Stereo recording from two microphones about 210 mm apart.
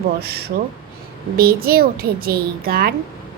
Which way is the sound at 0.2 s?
50° right (ahead or behind).